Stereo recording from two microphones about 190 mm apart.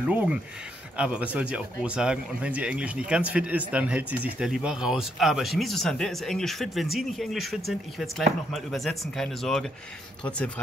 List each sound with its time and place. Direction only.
0.1 s speech: 5° right (ahead or behind)